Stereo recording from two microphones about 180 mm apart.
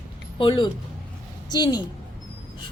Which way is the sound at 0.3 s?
25° left (ahead or behind).